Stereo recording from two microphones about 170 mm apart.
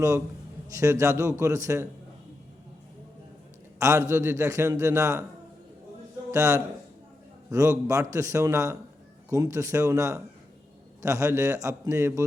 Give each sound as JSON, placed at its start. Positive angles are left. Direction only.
{"t": 0.7, "sound": "a man's voice", "side_deg": -15}
{"t": 3.8, "sound": "a man's voice", "side_deg": -15}
{"t": 6.3, "sound": "a man's voice", "side_deg": -20}